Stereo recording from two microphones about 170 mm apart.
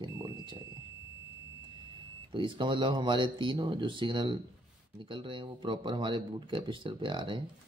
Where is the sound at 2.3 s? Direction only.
30° right (ahead or behind).